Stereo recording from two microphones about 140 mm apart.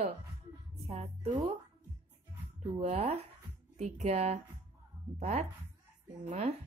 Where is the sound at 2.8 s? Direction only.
50° right (ahead or behind).